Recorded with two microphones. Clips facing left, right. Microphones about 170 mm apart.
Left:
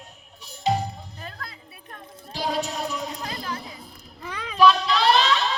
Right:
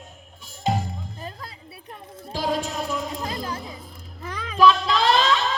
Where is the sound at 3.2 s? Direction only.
25° right (ahead or behind).